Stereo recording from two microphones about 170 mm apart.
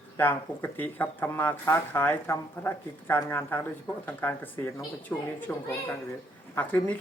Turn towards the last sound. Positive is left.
turn(degrees=10)  # may be behind; listen again after turning